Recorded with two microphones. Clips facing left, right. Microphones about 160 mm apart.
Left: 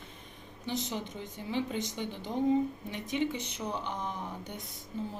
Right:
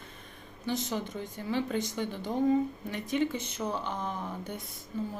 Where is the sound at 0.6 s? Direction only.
20° left (ahead or behind).